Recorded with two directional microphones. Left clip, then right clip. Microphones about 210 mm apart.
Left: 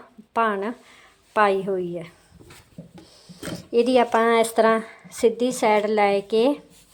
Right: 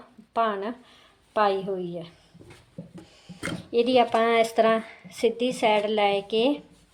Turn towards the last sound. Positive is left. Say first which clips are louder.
# left 3 dB
turn(degrees=20)  # may be behind; listen again after turning